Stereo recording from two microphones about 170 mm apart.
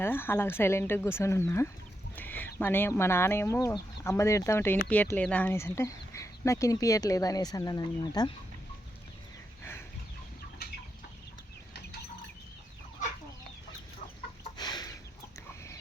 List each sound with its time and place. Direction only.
0.0 s speech: 10° left (ahead or behind)
14.5 s chicken: 25° left (ahead or behind)